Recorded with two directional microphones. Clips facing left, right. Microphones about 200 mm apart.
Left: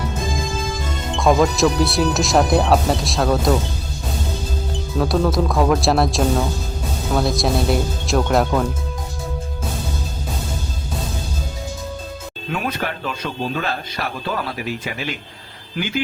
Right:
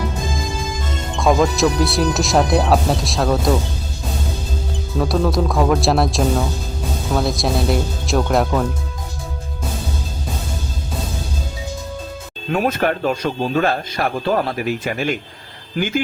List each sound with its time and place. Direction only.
1.1 s speech: centre (ahead or behind)
4.9 s speech: centre (ahead or behind)
12.5 s speech: 45° right (ahead or behind)